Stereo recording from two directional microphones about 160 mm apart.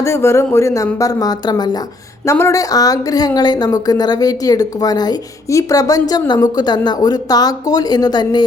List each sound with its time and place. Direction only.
0.0 s a woman's voice: 15° left (ahead or behind)